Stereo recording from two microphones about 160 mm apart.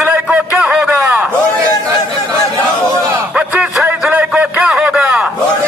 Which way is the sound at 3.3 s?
5° right (ahead or behind).